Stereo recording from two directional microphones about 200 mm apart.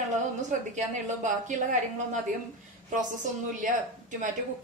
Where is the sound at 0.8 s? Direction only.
40° right (ahead or behind).